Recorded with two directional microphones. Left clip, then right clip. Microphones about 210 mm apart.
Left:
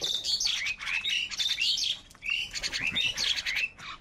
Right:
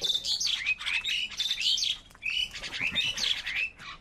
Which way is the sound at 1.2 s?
55° left (ahead or behind).